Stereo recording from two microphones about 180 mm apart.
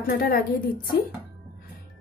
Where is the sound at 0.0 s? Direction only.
55° left (ahead or behind).